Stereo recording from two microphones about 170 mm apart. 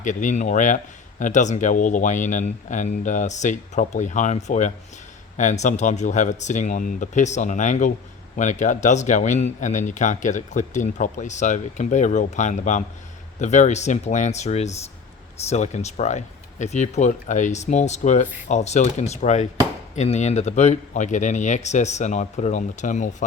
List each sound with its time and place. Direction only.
0.0 s speech: 50° left (ahead or behind)